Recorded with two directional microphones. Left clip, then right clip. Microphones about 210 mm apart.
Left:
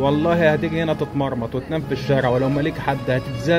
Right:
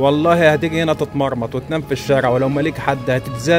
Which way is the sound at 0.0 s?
35° right (ahead or behind).